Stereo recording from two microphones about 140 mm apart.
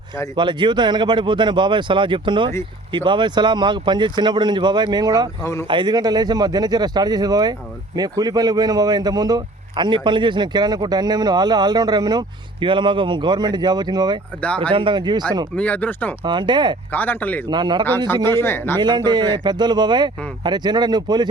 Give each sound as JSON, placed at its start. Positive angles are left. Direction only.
{"t": 0.3, "sound": "speech", "side_deg": -35}
{"t": 5.4, "sound": "speech", "side_deg": 20}
{"t": 5.6, "sound": "speech", "side_deg": -35}
{"t": 14.4, "sound": "speech", "side_deg": 10}
{"t": 14.7, "sound": "speech", "side_deg": -35}
{"t": 15.5, "sound": "speech", "side_deg": 10}
{"t": 16.2, "sound": "speech", "side_deg": -35}
{"t": 16.9, "sound": "speech", "side_deg": 15}
{"t": 17.5, "sound": "speech", "side_deg": -30}
{"t": 18.3, "sound": "speech", "side_deg": 15}
{"t": 18.8, "sound": "speech", "side_deg": -30}